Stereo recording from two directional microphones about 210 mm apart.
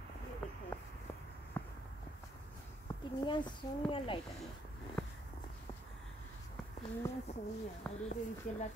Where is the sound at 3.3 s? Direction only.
20° left (ahead or behind).